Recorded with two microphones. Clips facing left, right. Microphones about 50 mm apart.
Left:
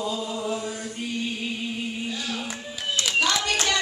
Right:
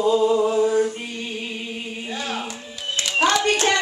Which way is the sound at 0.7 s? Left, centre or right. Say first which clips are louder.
Right 14 dB; right.